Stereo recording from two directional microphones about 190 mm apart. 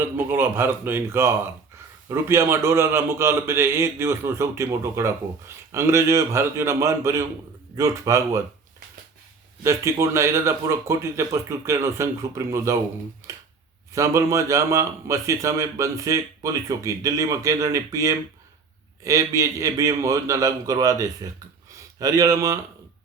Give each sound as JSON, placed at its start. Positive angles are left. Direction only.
{"t": 0.0, "sound": "speech", "side_deg": -10}
{"t": 9.6, "sound": "speech", "side_deg": -15}